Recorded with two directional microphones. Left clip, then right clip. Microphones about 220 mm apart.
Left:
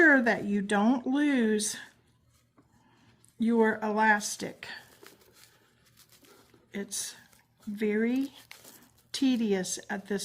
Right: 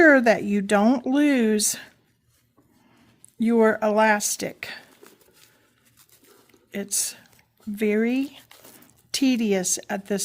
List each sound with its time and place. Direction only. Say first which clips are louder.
0.0 s speech: right 6 dB; 50° right (ahead or behind)
3.4 s speech: right 7 dB; 50° right (ahead or behind)
6.7 s speech: right 8 dB; 50° right (ahead or behind)